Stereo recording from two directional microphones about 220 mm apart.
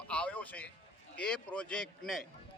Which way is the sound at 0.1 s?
5° left (ahead or behind).